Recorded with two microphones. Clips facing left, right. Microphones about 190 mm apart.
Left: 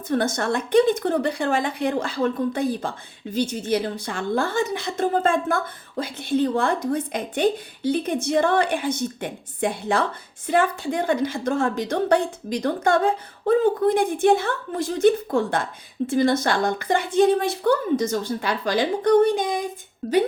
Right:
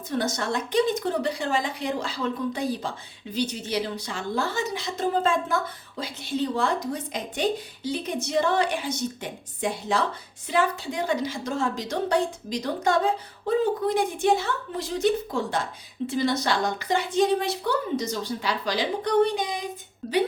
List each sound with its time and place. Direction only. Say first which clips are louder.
0.1 s a woman's voice: left 4 dB; 55° left (ahead or behind)